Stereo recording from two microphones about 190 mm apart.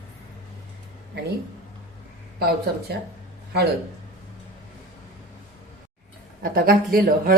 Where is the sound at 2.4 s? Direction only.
60° right (ahead or behind).